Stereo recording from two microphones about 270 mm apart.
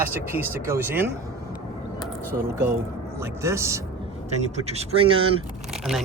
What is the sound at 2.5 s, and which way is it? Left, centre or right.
Speech, centre.